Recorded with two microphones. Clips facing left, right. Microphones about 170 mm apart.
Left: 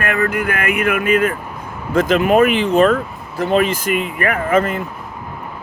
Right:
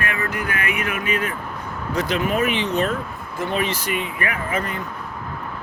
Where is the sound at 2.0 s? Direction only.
90° left.